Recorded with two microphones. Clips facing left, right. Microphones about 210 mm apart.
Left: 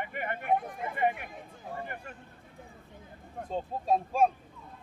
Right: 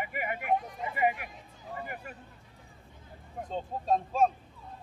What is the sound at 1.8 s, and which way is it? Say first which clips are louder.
Speech: even; 5° right (ahead or behind).